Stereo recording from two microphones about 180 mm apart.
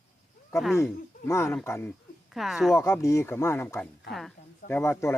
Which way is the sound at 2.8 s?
15° left (ahead or behind).